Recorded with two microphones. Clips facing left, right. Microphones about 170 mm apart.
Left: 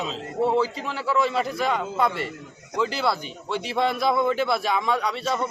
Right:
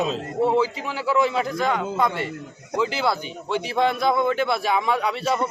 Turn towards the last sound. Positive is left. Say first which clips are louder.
# right 2 dB
turn(degrees=-5)  # may be behind; listen again after turning